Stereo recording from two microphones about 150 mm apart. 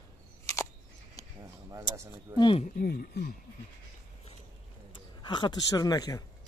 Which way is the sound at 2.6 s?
70° left (ahead or behind).